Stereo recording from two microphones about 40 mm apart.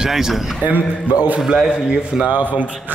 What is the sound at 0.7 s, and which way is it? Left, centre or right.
Speech, right.